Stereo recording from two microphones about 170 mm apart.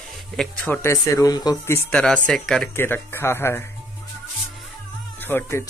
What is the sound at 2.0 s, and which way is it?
Speech, 5° left (ahead or behind).